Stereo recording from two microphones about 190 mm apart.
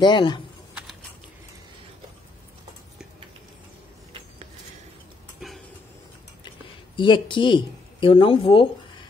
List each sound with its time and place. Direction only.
0.0 s speech: 25° left (ahead or behind)
5.4 s a sound: centre (ahead or behind)
7.0 s speech: 25° left (ahead or behind)